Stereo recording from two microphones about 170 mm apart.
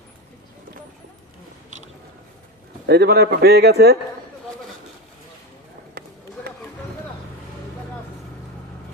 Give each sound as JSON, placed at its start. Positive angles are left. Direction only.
{"t": 2.8, "sound": "a man's voice", "side_deg": -75}